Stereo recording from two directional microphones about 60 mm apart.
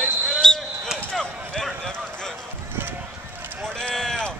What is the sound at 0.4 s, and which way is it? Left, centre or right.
Basketball bounce, centre.